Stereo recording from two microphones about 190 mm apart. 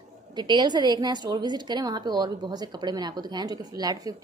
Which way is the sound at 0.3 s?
20° right (ahead or behind).